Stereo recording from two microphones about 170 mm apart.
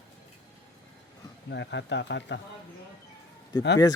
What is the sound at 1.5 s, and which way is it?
Speech, 90° left.